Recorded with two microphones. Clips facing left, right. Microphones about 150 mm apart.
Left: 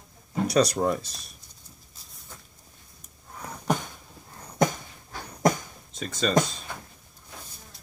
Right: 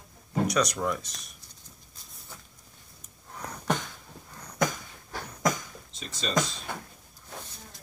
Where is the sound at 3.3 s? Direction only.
10° left (ahead or behind).